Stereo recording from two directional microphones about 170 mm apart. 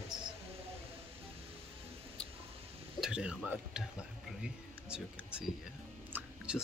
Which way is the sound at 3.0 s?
5° right (ahead or behind).